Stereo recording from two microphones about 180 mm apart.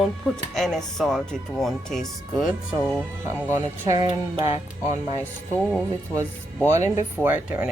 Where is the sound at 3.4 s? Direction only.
15° right (ahead or behind).